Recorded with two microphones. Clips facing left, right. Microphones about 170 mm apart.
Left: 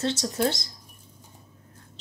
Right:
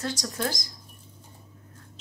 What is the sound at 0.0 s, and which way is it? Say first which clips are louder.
Speech: left 5 dB; 25° left (ahead or behind).